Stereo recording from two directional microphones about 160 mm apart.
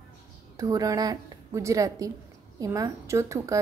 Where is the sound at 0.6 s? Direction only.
20° right (ahead or behind).